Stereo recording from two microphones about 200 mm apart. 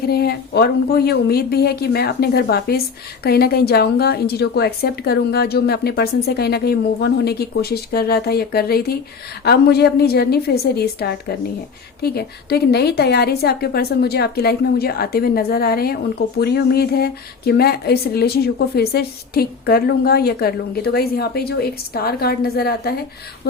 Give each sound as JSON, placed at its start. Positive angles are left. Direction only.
{"t": 0.1, "sound": "a woman's voice", "side_deg": 50}